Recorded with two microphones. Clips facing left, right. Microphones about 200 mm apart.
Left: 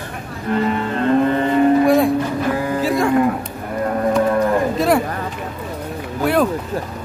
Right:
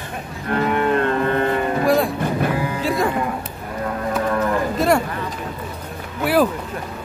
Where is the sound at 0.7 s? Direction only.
60° right (ahead or behind).